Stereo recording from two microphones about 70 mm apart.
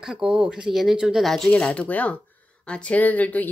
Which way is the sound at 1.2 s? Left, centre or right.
Centre.